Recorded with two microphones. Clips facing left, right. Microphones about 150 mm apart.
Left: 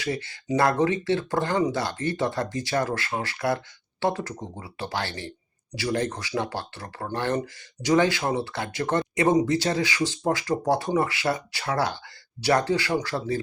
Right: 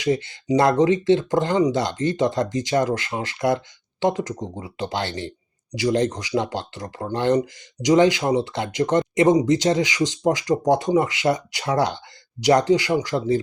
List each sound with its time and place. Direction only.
0.0 s speech: 20° right (ahead or behind)